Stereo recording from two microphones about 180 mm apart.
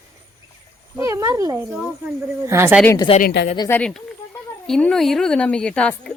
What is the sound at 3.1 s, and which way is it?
Speech, 30° left (ahead or behind).